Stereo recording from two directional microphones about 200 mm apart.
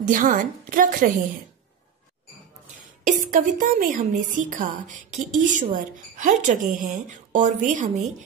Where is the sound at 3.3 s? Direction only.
40° right (ahead or behind).